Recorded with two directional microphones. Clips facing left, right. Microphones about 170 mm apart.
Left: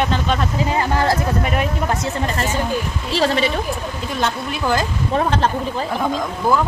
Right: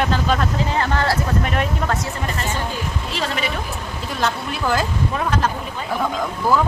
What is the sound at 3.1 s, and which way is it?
Speech, 30° left (ahead or behind).